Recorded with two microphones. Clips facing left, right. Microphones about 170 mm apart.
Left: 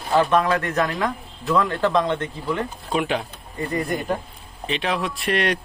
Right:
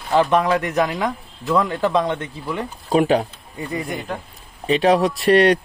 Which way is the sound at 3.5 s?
5° right (ahead or behind).